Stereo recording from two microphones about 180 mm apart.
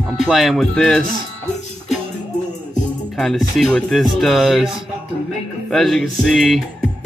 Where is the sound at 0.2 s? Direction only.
Centre (ahead or behind).